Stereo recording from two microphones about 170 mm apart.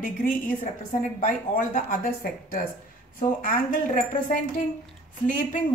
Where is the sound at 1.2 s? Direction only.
50° left (ahead or behind).